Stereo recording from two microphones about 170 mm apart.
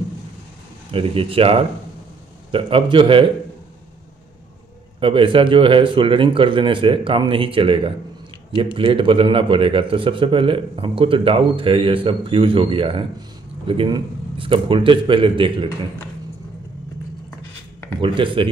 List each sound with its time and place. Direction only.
0.9 s a man's voice: 30° right (ahead or behind)
5.0 s a man's voice: 30° right (ahead or behind)
18.0 s a man's voice: 30° right (ahead or behind)